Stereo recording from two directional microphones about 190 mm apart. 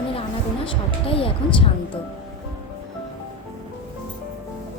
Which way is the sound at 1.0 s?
30° left (ahead or behind).